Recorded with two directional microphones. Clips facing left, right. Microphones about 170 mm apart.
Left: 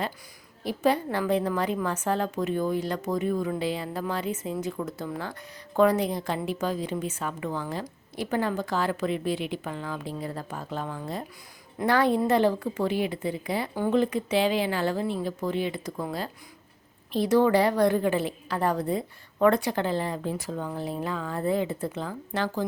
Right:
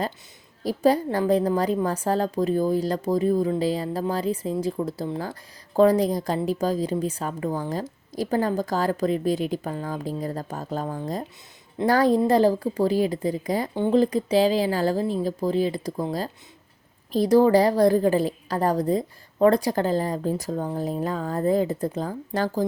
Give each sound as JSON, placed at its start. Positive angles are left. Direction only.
{"t": 0.6, "sound": "a woman's voice", "side_deg": -40}
{"t": 17.1, "sound": "a woman's voice", "side_deg": -40}